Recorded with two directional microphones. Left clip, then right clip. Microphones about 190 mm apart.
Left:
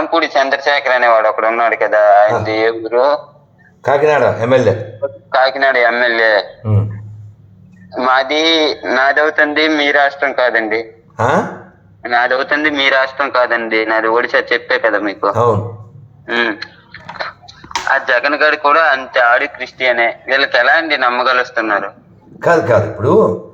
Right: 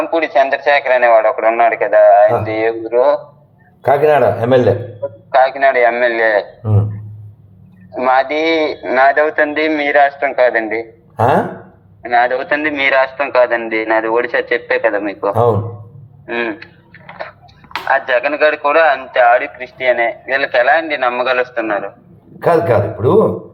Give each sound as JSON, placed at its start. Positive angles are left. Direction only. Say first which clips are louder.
{"t": 0.0, "sound": "a man's voice", "louder": "even", "side_deg": 15}
{"t": 3.8, "sound": "a man's voice", "louder": "right 1 dB", "side_deg": 0}
{"t": 5.0, "sound": "a man's voice", "louder": "right 1 dB", "side_deg": 15}
{"t": 7.9, "sound": "a man's voice", "louder": "even", "side_deg": 15}
{"t": 11.2, "sound": "a man's voice", "louder": "right 1 dB", "side_deg": 0}
{"t": 12.0, "sound": "a man's voice", "louder": "even", "side_deg": 15}
{"t": 17.8, "sound": "a man's voice", "louder": "left 1 dB", "side_deg": 15}
{"t": 22.7, "sound": "a man's voice", "louder": "left 1 dB", "side_deg": 5}